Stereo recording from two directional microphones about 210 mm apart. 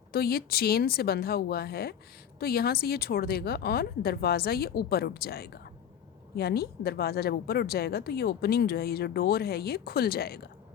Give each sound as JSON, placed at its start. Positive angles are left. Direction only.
{"t": 0.1, "sound": "a woman's voice", "side_deg": 45}